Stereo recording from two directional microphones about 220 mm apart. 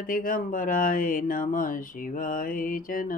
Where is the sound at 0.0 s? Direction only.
40° left (ahead or behind).